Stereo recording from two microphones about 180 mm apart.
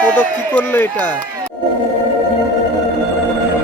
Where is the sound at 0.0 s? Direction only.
10° left (ahead or behind).